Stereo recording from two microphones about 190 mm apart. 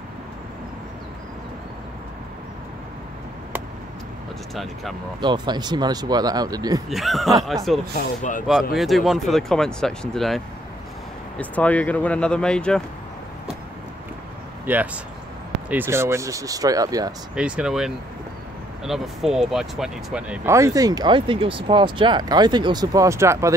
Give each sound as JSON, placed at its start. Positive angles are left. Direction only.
{"t": 5.2, "sound": "speech", "side_deg": -25}
{"t": 6.9, "sound": "speech", "side_deg": 0}
{"t": 8.2, "sound": "speech", "side_deg": 45}
{"t": 8.7, "sound": "speech", "side_deg": 0}
{"t": 14.7, "sound": "speech", "side_deg": -10}
{"t": 17.4, "sound": "speech", "side_deg": -5}